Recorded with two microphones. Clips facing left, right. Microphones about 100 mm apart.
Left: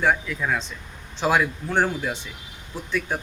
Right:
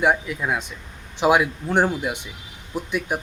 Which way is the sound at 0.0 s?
15° right (ahead or behind).